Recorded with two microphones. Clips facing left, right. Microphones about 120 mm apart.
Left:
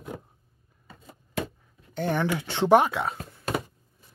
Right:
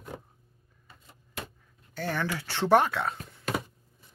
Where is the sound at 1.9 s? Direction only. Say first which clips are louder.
Left 5 dB; 20° left (ahead or behind).